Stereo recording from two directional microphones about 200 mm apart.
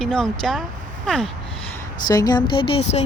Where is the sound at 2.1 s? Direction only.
20° left (ahead or behind).